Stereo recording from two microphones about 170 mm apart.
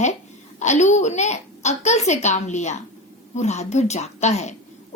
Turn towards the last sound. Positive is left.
turn(degrees=40)  # may be behind; listen again after turning